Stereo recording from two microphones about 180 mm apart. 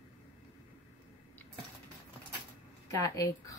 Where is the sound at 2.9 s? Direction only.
20° left (ahead or behind).